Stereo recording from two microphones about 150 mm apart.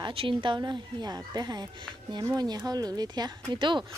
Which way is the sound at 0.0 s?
35° right (ahead or behind).